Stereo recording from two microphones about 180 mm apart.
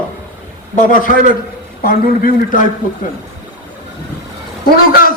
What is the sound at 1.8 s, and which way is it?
Speech, 55° left (ahead or behind).